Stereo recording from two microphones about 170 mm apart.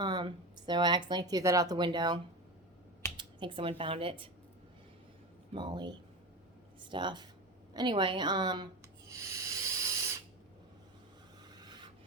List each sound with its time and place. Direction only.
0.0 s speech: 25° right (ahead or behind)
5.5 s speech: 25° right (ahead or behind)
9.0 s owl: 15° right (ahead or behind)
11.5 s rub: 25° right (ahead or behind)